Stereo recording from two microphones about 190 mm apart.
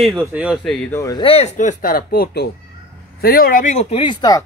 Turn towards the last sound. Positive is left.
turn(degrees=20)  # may be behind; listen again after turning